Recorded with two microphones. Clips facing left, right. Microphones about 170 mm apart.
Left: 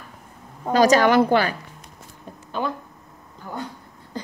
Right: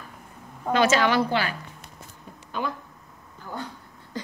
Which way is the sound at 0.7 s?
40° left (ahead or behind).